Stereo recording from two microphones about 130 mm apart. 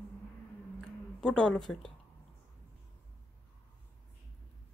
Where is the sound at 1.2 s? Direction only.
5° left (ahead or behind).